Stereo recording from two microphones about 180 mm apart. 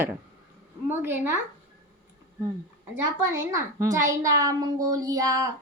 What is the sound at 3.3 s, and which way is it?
A child's voice, 15° right (ahead or behind).